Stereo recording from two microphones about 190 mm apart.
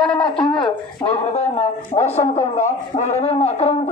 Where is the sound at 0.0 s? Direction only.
25° left (ahead or behind).